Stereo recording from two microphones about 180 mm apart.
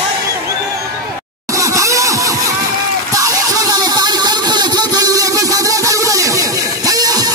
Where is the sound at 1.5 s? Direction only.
15° right (ahead or behind).